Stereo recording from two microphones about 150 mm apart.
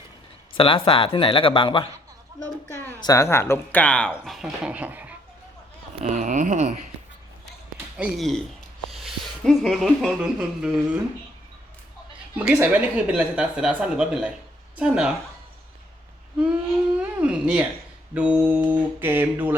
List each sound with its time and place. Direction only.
0.5 s speech: 35° left (ahead or behind)
3.0 s speech: 20° left (ahead or behind); by 5.1 s 10° right (ahead or behind)
6.1 s speech: 55° right (ahead or behind)
7.9 s speech: 5° right (ahead or behind)
8.9 s a sound: centre (ahead or behind)
10.2 s speech: 5° right (ahead or behind)
12.4 s speech: 10° right (ahead or behind)
17.0 s a sound: 10° right (ahead or behind)
18.1 s speech: 10° right (ahead or behind)